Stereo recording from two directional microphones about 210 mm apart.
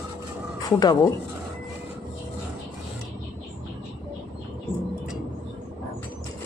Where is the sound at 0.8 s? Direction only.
20° left (ahead or behind).